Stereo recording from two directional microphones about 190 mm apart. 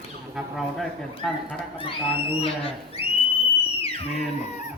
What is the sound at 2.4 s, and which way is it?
Speech, 30° left (ahead or behind).